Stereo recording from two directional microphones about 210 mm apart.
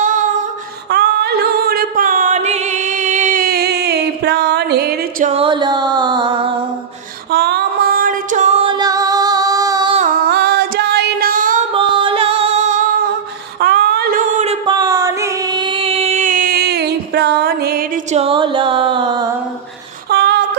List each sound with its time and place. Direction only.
0.9 s music: 50° right (ahead or behind)
5.3 s music: 25° right (ahead or behind)
7.3 s female singing: 50° right (ahead or behind); by 10.0 s 20° right (ahead or behind)
10.2 s music: 50° right (ahead or behind)
11.7 s music: 25° right (ahead or behind)
13.6 s a sound: 50° right (ahead or behind); by 14.8 s 30° right (ahead or behind)
14.8 s music: 15° right (ahead or behind)
20.1 s a sound: 55° right (ahead or behind)